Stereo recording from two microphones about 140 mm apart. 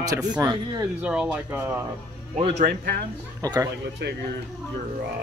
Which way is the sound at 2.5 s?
80° right.